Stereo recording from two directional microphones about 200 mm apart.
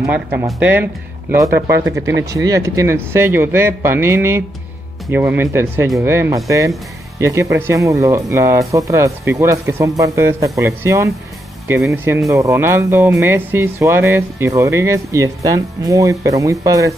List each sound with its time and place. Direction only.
0.0 s speech: 10° right (ahead or behind)
2.0 s speech: 15° right (ahead or behind)